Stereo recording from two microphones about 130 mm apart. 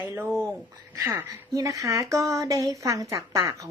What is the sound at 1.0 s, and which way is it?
Speech, 20° right (ahead or behind).